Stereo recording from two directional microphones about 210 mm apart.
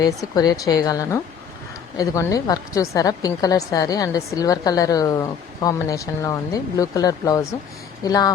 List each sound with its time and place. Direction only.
0.0 s a woman's voice: 20° left (ahead or behind)